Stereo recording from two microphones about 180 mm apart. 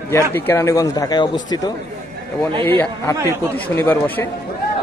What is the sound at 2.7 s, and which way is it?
Speech, 10° left (ahead or behind).